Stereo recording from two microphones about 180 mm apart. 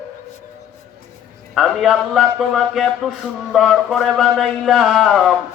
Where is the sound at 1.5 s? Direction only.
Centre (ahead or behind).